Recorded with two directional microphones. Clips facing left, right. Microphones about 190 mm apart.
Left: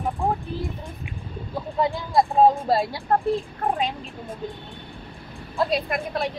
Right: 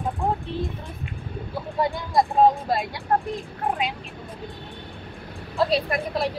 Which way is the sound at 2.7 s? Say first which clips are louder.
Left 3 dB; 30° left (ahead or behind).